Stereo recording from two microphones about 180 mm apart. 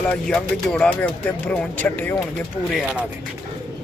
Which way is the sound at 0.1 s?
5° left (ahead or behind).